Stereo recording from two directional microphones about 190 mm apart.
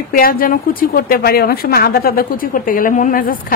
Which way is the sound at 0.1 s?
50° left (ahead or behind).